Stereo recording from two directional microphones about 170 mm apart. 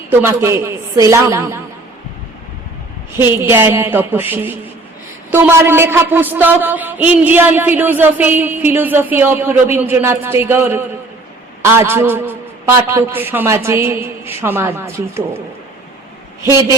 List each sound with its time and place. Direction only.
0.1 s a woman's voice: 15° right (ahead or behind)
3.2 s a woman's voice: 15° right (ahead or behind)
16.5 s a woman's voice: 15° right (ahead or behind)